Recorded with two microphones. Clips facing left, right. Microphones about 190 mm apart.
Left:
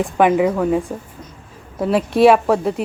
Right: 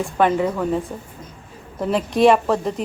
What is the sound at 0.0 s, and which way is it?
Speech, 10° left (ahead or behind).